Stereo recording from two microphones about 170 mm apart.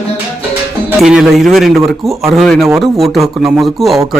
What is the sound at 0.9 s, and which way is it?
Speech, 5° right (ahead or behind).